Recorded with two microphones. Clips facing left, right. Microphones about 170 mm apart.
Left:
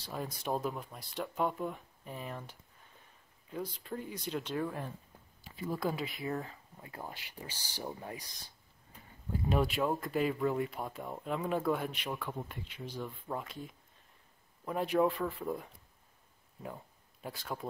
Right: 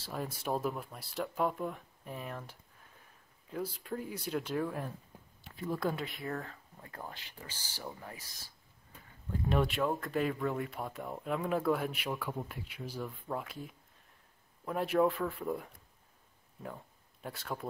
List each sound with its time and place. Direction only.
0.0 s speech: centre (ahead or behind)
3.5 s speech: 5° right (ahead or behind); by 8.3 s 20° left (ahead or behind)
9.3 s speech: centre (ahead or behind)